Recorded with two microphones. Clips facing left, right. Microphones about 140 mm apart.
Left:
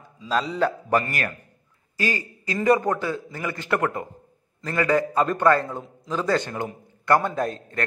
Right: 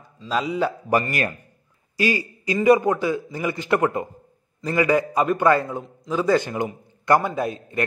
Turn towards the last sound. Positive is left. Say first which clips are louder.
# right 1 dB
turn(degrees=-5)  # may be behind; listen again after turning